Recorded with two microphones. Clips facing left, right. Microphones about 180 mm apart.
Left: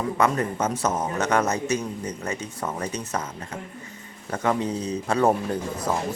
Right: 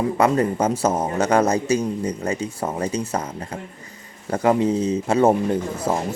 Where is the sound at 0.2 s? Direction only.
30° right (ahead or behind).